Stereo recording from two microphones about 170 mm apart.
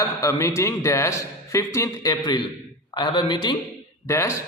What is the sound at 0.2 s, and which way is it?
A man's voice, 20° left (ahead or behind).